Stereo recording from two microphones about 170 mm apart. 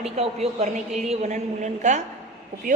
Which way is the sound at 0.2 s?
35° right (ahead or behind).